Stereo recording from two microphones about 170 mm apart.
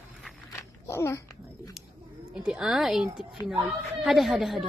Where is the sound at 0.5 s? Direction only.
15° left (ahead or behind).